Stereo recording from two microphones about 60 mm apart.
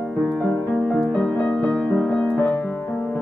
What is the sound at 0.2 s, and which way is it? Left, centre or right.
Music, left.